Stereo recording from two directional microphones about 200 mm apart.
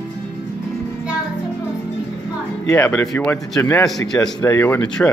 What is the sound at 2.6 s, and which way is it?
A man's voice, 10° left (ahead or behind).